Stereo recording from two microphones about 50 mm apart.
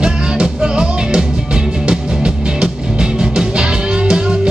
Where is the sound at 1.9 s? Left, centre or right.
Centre.